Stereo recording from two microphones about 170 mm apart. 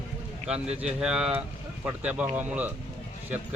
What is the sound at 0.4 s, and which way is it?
Speech, 5° right (ahead or behind).